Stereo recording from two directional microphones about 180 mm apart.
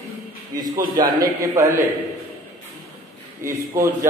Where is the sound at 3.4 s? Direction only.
15° right (ahead or behind).